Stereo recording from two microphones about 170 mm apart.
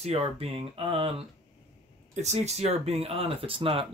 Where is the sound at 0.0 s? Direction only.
35° right (ahead or behind).